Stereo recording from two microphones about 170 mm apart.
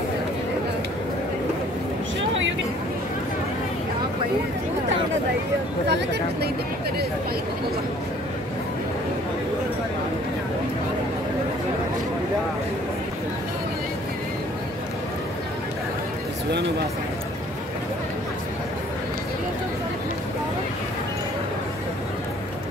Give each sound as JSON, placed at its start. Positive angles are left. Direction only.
{"t": 5.9, "sound": "speech", "side_deg": -90}